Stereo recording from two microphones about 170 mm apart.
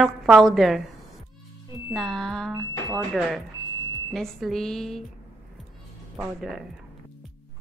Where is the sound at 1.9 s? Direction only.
Centre (ahead or behind).